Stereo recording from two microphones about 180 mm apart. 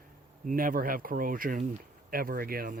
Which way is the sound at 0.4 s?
50° right (ahead or behind).